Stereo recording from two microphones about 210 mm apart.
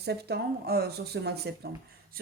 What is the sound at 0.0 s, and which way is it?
Speech, 50° right (ahead or behind).